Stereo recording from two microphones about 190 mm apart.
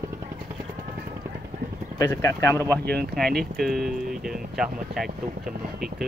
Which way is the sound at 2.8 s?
55° right (ahead or behind).